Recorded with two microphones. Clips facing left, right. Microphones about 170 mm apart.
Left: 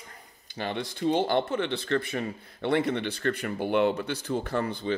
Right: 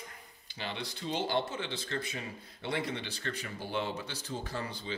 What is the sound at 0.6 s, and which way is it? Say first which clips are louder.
Speech: left 9 dB; 55° left (ahead or behind).